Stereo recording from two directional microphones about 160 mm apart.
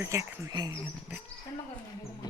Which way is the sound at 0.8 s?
10° right (ahead or behind).